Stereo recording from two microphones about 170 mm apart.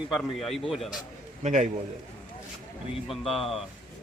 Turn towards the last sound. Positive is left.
turn(degrees=0)  # may be behind; listen again after turning